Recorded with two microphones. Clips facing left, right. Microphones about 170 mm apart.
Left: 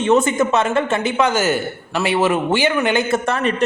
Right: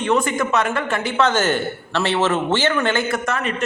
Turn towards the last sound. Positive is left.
turn(degrees=35)  # may be behind; listen again after turning